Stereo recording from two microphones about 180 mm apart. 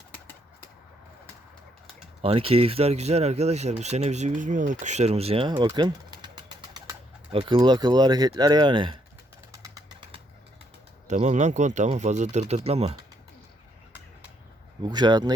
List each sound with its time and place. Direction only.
2.2 s speech: 30° right (ahead or behind)
11.1 s speech: 40° right (ahead or behind)
14.8 s speech: 25° right (ahead or behind)